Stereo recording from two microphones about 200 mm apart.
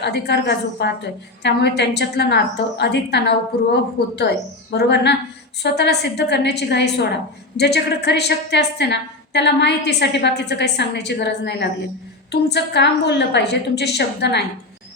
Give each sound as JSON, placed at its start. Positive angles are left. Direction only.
{"t": 0.0, "sound": "a woman's voice", "side_deg": 55}